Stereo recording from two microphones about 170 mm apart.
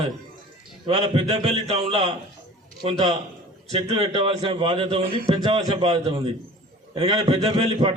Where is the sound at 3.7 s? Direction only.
35° right (ahead or behind).